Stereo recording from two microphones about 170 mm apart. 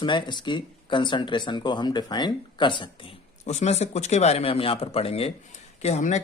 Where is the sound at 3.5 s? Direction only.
40° left (ahead or behind).